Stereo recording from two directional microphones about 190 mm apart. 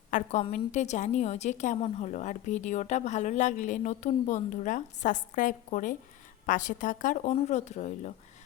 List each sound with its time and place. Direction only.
0.1 s a woman's voice: 40° left (ahead or behind)